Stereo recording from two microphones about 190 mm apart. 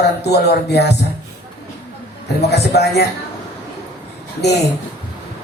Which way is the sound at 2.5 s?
60° left (ahead or behind).